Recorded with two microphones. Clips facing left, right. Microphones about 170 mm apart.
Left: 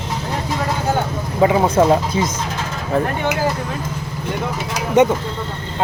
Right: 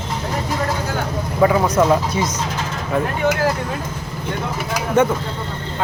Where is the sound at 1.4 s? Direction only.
25° left (ahead or behind).